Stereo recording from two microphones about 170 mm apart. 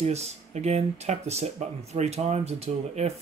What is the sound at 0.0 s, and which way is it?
Speech, 40° right (ahead or behind).